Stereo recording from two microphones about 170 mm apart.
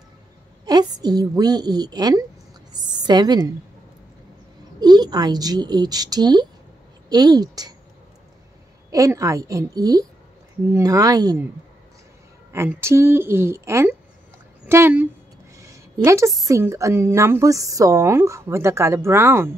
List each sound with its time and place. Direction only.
0.7 s a woman's voice: 25° right (ahead or behind)
4.7 s a woman's voice: 25° right (ahead or behind)
8.9 s a woman's voice: 20° right (ahead or behind)
12.5 s a woman's voice: 15° right (ahead or behind)
15.6 s a sound: 20° right (ahead or behind)
16.4 s a woman's voice: 15° right (ahead or behind)